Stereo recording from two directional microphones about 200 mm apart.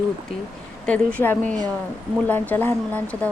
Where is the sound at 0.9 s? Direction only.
5° left (ahead or behind).